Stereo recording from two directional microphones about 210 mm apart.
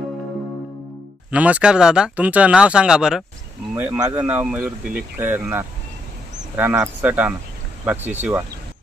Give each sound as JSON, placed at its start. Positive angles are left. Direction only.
{"t": 1.3, "sound": "speech", "side_deg": -5}